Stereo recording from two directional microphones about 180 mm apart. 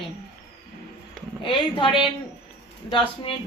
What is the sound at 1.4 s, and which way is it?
A woman's voice, 30° left (ahead or behind).